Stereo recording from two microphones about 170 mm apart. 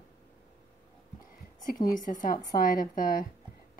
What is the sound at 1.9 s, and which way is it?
A woman's voice, 50° left (ahead or behind).